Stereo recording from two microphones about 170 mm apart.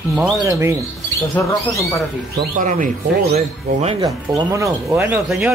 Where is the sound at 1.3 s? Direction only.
15° left (ahead or behind).